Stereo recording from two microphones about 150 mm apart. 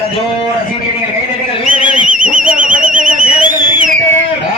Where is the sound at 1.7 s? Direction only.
60° right (ahead or behind).